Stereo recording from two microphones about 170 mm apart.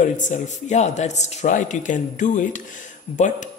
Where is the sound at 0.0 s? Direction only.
45° left (ahead or behind).